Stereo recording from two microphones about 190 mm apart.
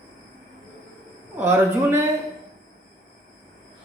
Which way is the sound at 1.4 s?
15° right (ahead or behind).